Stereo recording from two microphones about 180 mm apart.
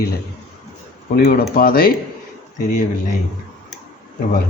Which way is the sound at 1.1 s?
60° left (ahead or behind).